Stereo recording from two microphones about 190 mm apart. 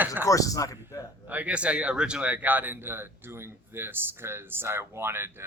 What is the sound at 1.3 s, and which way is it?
Speech, 5° right (ahead or behind).